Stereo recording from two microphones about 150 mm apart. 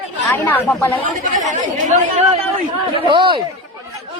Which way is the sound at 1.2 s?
55° right (ahead or behind).